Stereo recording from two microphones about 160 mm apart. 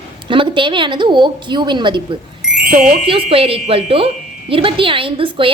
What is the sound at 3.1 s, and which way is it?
A woman's voice, 35° right (ahead or behind).